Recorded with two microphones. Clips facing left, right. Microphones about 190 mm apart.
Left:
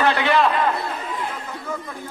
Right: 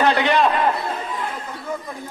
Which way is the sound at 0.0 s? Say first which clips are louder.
Right 1 dB; 20° right (ahead or behind).